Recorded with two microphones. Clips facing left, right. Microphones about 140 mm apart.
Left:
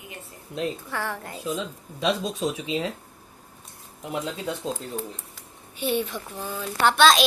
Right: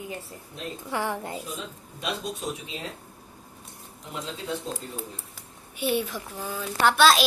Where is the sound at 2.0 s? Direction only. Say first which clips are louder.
Left 6 dB; 90° left.